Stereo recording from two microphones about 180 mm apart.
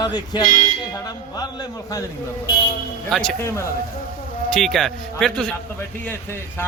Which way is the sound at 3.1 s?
Centre (ahead or behind).